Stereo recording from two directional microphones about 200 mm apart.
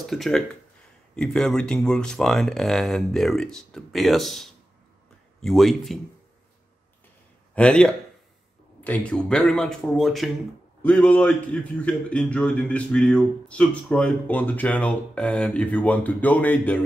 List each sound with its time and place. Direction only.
0.0 s speech: centre (ahead or behind)
7.5 s a man's voice: 5° left (ahead or behind)